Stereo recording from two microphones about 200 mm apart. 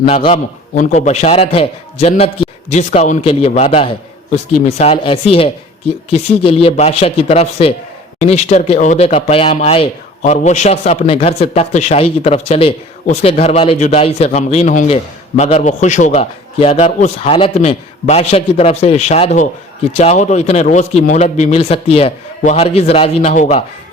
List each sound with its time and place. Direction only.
0.8 s a man's voice: 35° left (ahead or behind)